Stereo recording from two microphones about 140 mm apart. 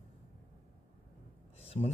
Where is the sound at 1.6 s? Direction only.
45° left (ahead or behind).